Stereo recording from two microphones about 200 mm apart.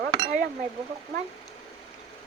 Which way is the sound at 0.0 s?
50° right (ahead or behind).